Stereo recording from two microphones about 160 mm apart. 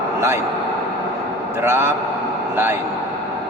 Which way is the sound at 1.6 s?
15° right (ahead or behind).